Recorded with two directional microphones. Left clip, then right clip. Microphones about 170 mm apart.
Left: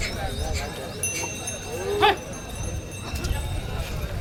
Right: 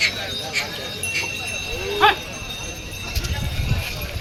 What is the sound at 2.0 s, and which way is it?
Horse, 35° right (ahead or behind).